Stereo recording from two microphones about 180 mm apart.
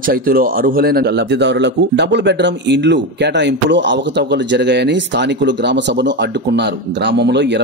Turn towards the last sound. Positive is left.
turn(degrees=-70)  # may be behind; listen again after turning